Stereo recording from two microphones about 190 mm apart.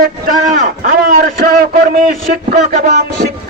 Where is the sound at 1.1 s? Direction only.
50° right (ahead or behind).